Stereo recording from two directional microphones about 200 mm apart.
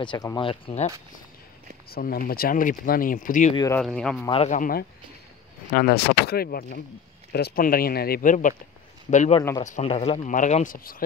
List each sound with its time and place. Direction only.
0.0 s speech: 20° left (ahead or behind)
1.9 s speech: 45° left (ahead or behind)
3.5 s speech: 15° left (ahead or behind)
3.8 s speech: 5° left (ahead or behind)
4.3 s speech: 35° left (ahead or behind)
9.4 s speech: 15° left (ahead or behind)
9.7 s speech: 35° left (ahead or behind)
10.3 s speech: 40° left (ahead or behind)